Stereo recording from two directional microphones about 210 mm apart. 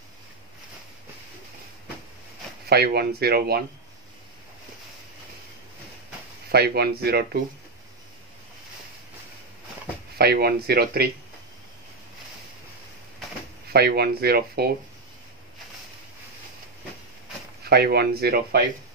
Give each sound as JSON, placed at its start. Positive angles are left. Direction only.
{"t": 2.7, "sound": "speech", "side_deg": -50}
{"t": 6.5, "sound": "speech", "side_deg": -50}
{"t": 10.1, "sound": "speech", "side_deg": -50}
{"t": 13.7, "sound": "speech", "side_deg": -50}
{"t": 17.6, "sound": "speech", "side_deg": -50}